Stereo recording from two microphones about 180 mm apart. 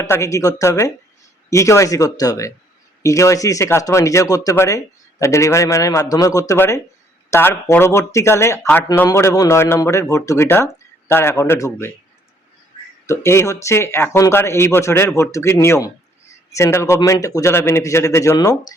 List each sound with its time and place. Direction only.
0.0 s speech: 15° left (ahead or behind)
13.1 s speech: 15° left (ahead or behind)